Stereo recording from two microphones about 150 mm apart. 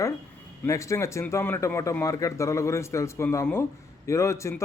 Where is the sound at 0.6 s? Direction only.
20° left (ahead or behind).